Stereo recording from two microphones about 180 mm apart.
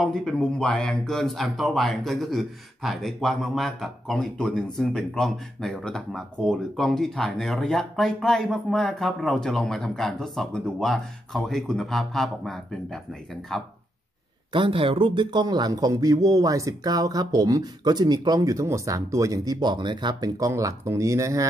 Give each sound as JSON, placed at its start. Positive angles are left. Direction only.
{"t": 0.0, "sound": "speech", "side_deg": 0}
{"t": 14.5, "sound": "speech", "side_deg": -30}